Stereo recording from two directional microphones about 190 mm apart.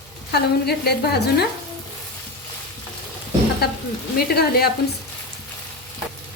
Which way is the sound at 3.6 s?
55° left (ahead or behind).